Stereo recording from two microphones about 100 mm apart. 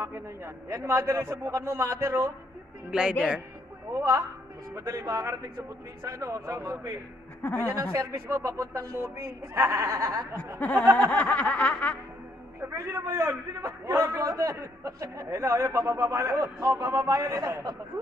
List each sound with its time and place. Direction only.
0.0 s a man's voice: 25° right (ahead or behind)
2.9 s a man's voice: 10° right (ahead or behind)
3.9 s a man's voice: 30° right (ahead or behind)
7.4 s snicker: 20° left (ahead or behind)
7.9 s a man's voice: 30° right (ahead or behind)
10.6 s snicker: 15° left (ahead or behind)
12.5 s a man's voice: 30° right (ahead or behind)